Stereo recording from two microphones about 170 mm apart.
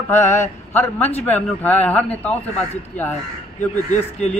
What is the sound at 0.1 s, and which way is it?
A man's voice, 15° left (ahead or behind).